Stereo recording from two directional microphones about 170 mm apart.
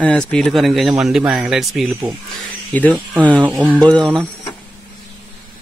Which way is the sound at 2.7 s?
10° left (ahead or behind).